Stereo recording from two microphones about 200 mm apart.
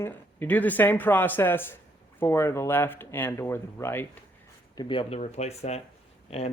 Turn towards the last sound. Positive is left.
turn(degrees=30)  # may be behind; listen again after turning